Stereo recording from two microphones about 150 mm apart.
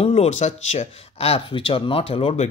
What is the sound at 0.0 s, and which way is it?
Speech, 45° left (ahead or behind).